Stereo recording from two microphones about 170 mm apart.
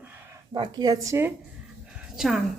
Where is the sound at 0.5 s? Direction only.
25° right (ahead or behind).